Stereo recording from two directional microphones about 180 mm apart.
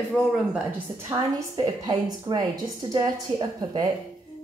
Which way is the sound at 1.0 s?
20° right (ahead or behind).